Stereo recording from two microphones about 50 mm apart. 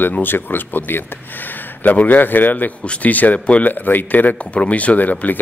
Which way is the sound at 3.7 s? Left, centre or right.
Left.